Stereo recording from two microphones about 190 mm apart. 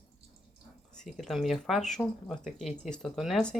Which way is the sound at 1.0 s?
Centre (ahead or behind).